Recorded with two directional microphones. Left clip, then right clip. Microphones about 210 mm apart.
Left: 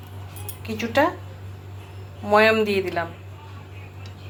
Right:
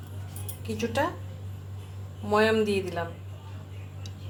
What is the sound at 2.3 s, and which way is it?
Speech, 5° left (ahead or behind).